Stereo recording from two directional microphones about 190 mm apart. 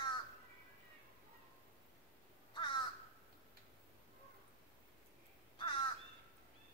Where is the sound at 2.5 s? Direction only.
25° left (ahead or behind).